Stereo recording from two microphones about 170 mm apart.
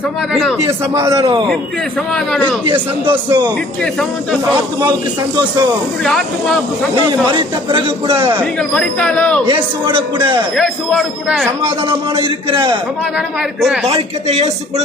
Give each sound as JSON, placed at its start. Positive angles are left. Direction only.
{"t": 0.6, "sound": "a man's voice", "side_deg": -15}
{"t": 1.2, "sound": "speech", "side_deg": -30}
{"t": 2.6, "sound": "speech", "side_deg": -30}
{"t": 6.0, "sound": "speech", "side_deg": 5}
{"t": 7.3, "sound": "a man's voice", "side_deg": -30}
{"t": 8.5, "sound": "speech", "side_deg": 5}
{"t": 9.5, "sound": "speech", "side_deg": -30}
{"t": 10.6, "sound": "speech", "side_deg": 0}
{"t": 11.9, "sound": "a man's voice", "side_deg": -30}
{"t": 13.1, "sound": "speech", "side_deg": 0}
{"t": 14.3, "sound": "a man's voice", "side_deg": -40}